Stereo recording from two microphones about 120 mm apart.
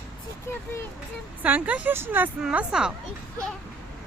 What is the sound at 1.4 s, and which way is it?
Speech, 15° right (ahead or behind).